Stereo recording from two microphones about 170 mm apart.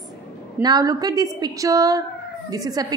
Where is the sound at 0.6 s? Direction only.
25° right (ahead or behind).